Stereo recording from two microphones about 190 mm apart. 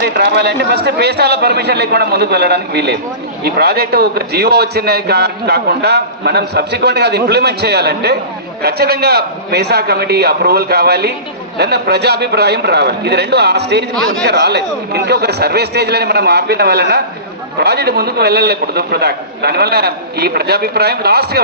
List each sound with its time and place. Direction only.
0.0 s a man's voice: 60° right (ahead or behind)
13.9 s a man's voice: 5° left (ahead or behind)
14.3 s a man's voice: 60° right (ahead or behind)